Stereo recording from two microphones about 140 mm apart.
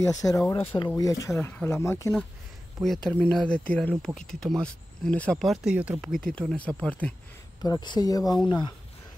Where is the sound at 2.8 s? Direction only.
5° left (ahead or behind).